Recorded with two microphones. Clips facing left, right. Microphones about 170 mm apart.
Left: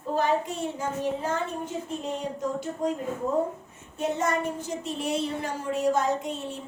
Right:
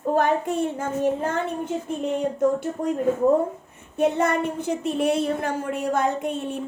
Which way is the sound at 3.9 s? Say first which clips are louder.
Right 6 dB; 60° right (ahead or behind).